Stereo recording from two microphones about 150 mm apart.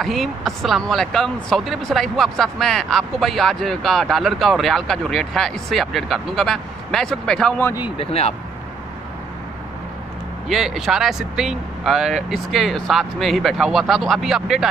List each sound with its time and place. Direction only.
0.0 s speech: centre (ahead or behind)
8.0 s speech: 40° left (ahead or behind)
10.5 s speech: centre (ahead or behind)